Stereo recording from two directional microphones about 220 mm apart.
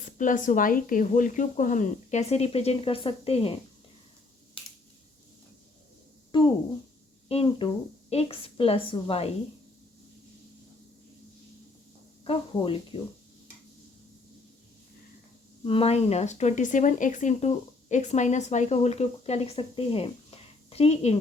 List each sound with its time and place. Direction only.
0.2 s speech: 35° left (ahead or behind)
6.3 s a sound: 20° left (ahead or behind)
7.3 s a woman's voice: 25° left (ahead or behind)
12.2 s a woman's voice: 25° left (ahead or behind)
15.6 s speech: 25° left (ahead or behind)